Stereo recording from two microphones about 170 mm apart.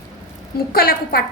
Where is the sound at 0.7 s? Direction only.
60° left (ahead or behind).